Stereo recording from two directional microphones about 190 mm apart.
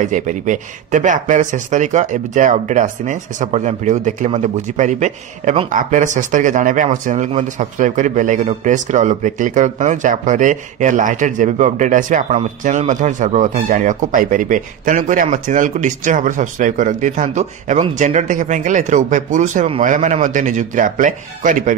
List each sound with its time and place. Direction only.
0.0 s a man's voice: 40° right (ahead or behind)